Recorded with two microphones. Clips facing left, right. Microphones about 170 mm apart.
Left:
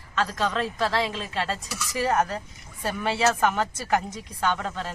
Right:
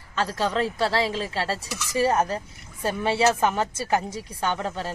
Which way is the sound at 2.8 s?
30° right (ahead or behind).